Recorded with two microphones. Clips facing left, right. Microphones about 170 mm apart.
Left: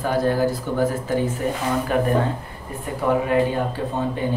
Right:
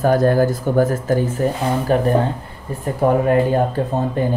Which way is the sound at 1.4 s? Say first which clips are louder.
Right 4 dB; 35° right (ahead or behind).